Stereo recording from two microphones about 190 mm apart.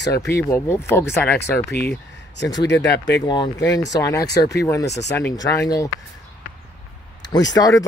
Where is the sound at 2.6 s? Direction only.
70° left (ahead or behind).